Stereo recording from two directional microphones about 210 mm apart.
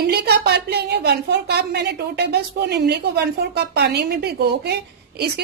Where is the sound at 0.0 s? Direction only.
50° right (ahead or behind).